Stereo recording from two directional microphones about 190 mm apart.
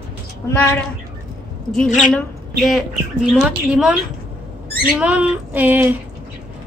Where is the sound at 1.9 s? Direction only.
40° left (ahead or behind).